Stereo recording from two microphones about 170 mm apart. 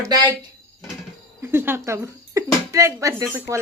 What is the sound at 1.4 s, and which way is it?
Speech, 15° right (ahead or behind).